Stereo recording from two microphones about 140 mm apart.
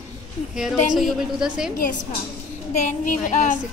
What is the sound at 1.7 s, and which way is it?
Speech, 80° left.